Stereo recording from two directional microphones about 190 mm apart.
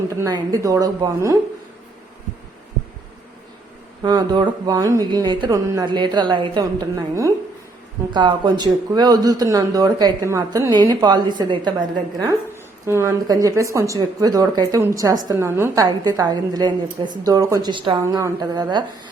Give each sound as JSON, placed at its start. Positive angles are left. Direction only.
{"t": 0.2, "sound": "a woman's voice", "side_deg": -20}
{"t": 4.0, "sound": "speech", "side_deg": -20}
{"t": 12.8, "sound": "speech", "side_deg": -15}